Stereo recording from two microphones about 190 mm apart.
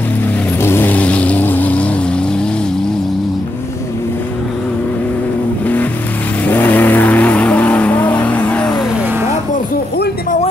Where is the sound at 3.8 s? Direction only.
15° left (ahead or behind); by 9.2 s 10° right (ahead or behind).